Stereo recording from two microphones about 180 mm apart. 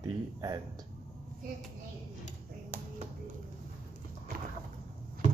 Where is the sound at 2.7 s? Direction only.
55° right (ahead or behind).